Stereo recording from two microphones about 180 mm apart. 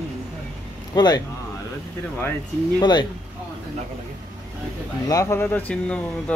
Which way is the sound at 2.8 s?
25° left (ahead or behind).